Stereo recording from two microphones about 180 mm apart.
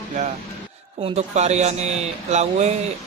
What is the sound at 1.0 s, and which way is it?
Speech, 35° right (ahead or behind).